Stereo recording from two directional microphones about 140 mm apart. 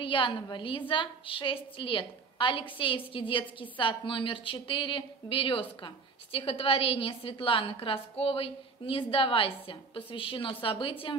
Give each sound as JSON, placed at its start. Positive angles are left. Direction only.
{"t": 0.0, "sound": "a woman's voice", "side_deg": 35}